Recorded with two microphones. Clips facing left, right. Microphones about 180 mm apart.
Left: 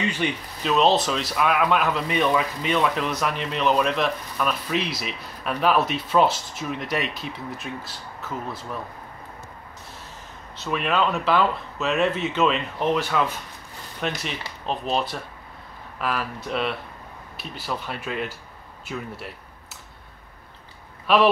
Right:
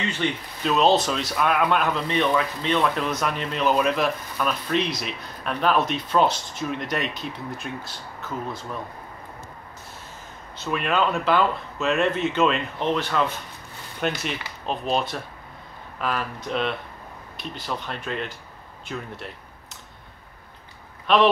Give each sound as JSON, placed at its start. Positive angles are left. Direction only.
{"t": 0.6, "sound": "speech", "side_deg": 0}
{"t": 10.6, "sound": "speech", "side_deg": 0}
{"t": 21.1, "sound": "speech", "side_deg": 5}